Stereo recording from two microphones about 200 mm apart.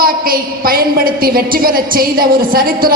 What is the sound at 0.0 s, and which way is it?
A woman's voice, 45° right (ahead or behind).